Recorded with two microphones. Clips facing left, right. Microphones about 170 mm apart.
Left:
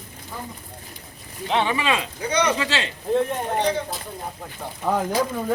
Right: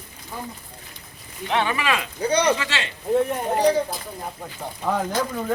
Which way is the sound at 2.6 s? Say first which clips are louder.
Left 3 dB; 35° left (ahead or behind).